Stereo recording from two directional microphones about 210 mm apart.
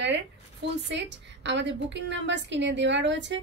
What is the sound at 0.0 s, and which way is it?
A woman's voice, 55° right (ahead or behind).